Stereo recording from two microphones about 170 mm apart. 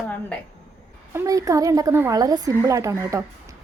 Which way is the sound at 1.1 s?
15° right (ahead or behind).